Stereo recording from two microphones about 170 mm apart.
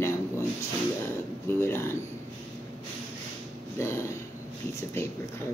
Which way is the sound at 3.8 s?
15° left (ahead or behind).